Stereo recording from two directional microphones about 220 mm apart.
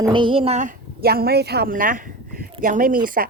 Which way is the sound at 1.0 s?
45° right (ahead or behind).